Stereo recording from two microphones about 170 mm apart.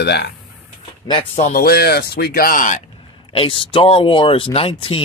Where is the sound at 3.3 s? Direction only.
30° left (ahead or behind).